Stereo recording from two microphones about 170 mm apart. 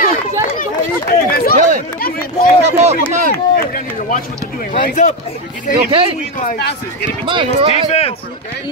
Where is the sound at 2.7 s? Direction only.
40° right (ahead or behind).